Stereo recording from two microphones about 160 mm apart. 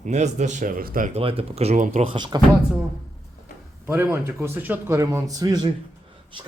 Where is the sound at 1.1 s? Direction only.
35° right (ahead or behind).